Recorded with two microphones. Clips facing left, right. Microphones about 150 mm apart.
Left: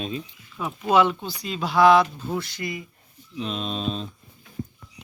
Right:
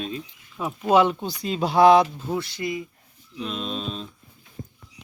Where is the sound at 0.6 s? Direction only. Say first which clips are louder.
Right 1 dB; 30° right (ahead or behind).